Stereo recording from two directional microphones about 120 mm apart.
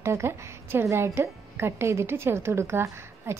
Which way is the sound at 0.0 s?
20° right (ahead or behind).